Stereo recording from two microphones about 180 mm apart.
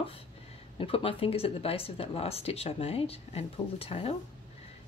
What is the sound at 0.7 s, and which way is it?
Speech, 30° left (ahead or behind).